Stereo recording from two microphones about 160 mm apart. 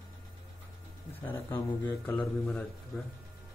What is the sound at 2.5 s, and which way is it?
Speech, 5° left (ahead or behind).